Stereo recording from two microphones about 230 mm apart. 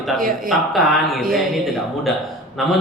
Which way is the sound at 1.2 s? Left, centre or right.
Right.